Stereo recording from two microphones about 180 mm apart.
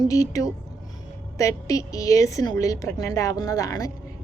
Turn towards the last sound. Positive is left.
turn(degrees=20)  # may be behind; listen again after turning